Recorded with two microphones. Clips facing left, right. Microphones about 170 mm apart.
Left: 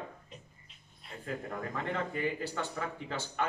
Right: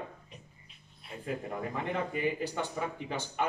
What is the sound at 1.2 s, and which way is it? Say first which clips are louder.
A man's voice: right 2 dB; 15° right (ahead or behind).